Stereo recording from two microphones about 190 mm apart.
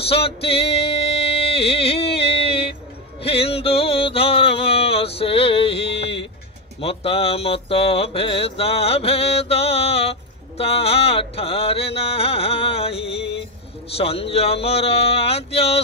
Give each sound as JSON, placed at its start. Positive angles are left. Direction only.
{"t": 0.0, "sound": "music", "side_deg": 30}
{"t": 6.8, "sound": "mantra", "side_deg": 30}
{"t": 10.6, "sound": "music", "side_deg": 30}